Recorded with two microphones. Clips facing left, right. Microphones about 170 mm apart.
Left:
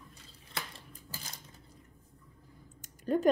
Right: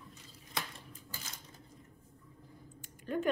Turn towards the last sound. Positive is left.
turn(degrees=40)  # may be behind; listen again after turning